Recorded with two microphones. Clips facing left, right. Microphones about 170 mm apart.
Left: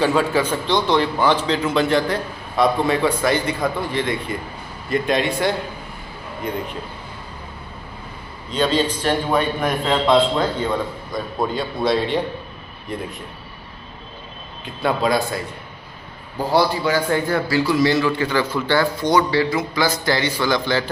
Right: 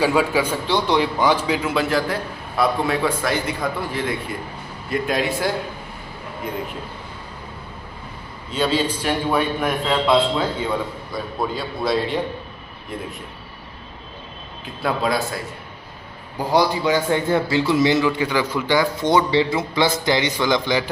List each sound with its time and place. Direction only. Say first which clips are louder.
0.0 s a man's voice: even; 10° right (ahead or behind)
8.5 s a man's voice: left 1 dB; 10° right (ahead or behind)
14.6 s a man's voice: left 2 dB; centre (ahead or behind)
16.4 s a man's voice: even; 15° right (ahead or behind)